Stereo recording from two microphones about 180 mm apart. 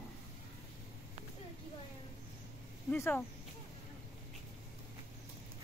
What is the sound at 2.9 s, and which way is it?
Speech, 10° left (ahead or behind).